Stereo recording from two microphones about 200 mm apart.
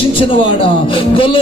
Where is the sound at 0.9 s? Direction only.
25° left (ahead or behind).